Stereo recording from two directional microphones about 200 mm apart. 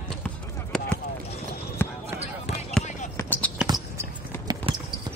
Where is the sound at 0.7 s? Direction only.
Centre (ahead or behind).